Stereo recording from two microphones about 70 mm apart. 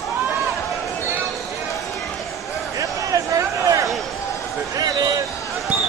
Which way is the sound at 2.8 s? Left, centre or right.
Right.